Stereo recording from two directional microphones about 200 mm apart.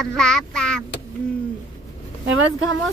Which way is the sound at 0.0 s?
5° left (ahead or behind).